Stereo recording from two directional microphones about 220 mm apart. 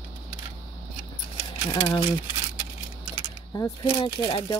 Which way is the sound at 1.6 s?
15° left (ahead or behind).